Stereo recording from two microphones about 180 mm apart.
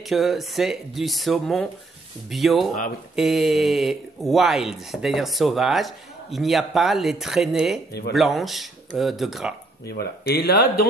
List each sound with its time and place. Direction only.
0.0 s speech: centre (ahead or behind)
9.8 s speech: 65° left (ahead or behind)